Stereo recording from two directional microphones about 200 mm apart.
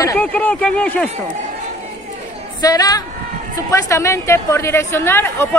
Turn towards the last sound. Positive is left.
turn(degrees=10)  # may be behind; listen again after turning